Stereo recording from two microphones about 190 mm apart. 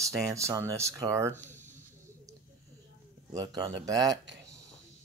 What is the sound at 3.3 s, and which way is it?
Speech, 20° right (ahead or behind).